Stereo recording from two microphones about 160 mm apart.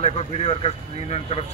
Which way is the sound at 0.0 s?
40° left (ahead or behind).